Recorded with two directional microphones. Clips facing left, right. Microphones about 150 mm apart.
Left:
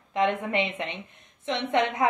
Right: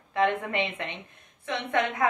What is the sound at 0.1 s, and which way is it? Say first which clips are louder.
A woman's voice: left 1 dB; 20° left (ahead or behind).